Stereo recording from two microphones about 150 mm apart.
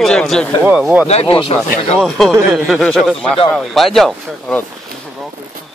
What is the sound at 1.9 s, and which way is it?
Speech, centre (ahead or behind).